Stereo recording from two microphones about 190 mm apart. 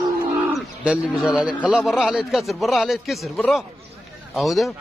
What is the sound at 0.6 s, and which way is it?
A man's voice, 5° right (ahead or behind).